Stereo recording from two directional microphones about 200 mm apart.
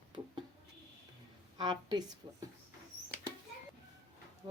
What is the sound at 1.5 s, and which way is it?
Speech, 25° right (ahead or behind).